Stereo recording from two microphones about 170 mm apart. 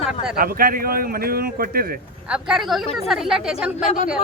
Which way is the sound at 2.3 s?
5° right (ahead or behind).